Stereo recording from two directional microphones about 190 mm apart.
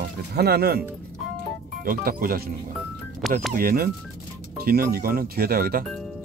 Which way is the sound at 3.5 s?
50° right (ahead or behind).